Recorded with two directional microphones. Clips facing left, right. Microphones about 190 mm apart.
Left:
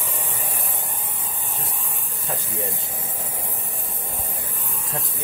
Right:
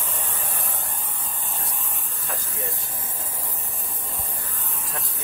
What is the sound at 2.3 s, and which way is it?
Speech, 25° left (ahead or behind).